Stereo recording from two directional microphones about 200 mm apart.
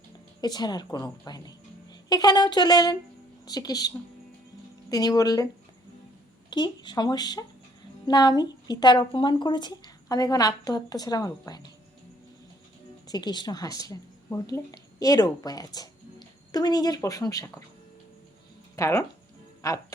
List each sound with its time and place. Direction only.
0.4 s a woman's voice: 20° left (ahead or behind)
6.5 s a woman's voice: 20° left (ahead or behind)
13.1 s a woman's voice: 20° left (ahead or behind)
18.8 s speech: 15° left (ahead or behind)